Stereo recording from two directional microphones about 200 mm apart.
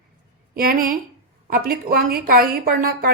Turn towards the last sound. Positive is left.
turn(degrees=-45)  # may be behind; listen again after turning